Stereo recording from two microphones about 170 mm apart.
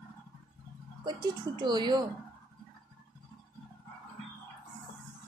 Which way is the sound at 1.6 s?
25° right (ahead or behind).